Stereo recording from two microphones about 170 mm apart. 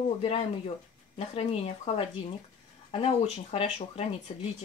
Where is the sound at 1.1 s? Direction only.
35° left (ahead or behind).